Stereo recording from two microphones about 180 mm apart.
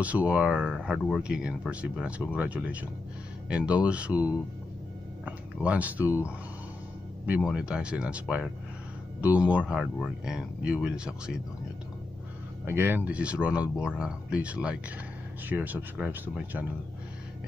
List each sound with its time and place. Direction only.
0.0 s speech: 10° right (ahead or behind)
6.0 s speech: 15° left (ahead or behind)
7.2 s speech: 5° right (ahead or behind)
12.6 s speech: 10° right (ahead or behind)